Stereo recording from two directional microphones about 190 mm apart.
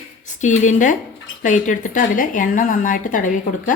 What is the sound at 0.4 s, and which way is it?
A woman's voice, 40° left (ahead or behind).